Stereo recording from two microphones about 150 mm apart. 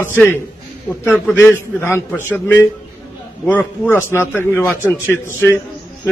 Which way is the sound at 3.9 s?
15° left (ahead or behind).